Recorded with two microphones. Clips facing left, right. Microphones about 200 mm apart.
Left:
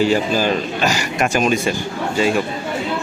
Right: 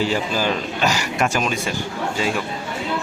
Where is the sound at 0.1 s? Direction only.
45° left (ahead or behind).